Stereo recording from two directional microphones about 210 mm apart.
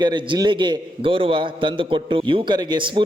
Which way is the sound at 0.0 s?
20° right (ahead or behind).